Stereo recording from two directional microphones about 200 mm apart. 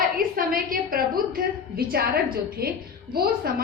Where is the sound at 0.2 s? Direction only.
45° right (ahead or behind).